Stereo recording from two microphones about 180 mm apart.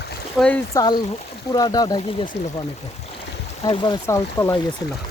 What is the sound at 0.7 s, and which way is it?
Speech, 20° left (ahead or behind).